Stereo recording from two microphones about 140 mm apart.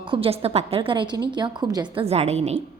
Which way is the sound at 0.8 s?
35° right (ahead or behind).